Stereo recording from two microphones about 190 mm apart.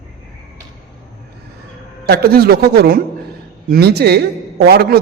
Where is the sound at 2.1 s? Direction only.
55° right (ahead or behind).